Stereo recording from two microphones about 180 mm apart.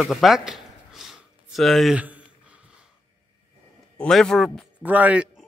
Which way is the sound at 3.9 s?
5° left (ahead or behind).